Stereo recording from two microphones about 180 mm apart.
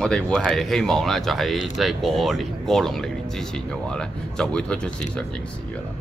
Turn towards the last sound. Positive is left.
turn(degrees=5)  # may be behind; listen again after turning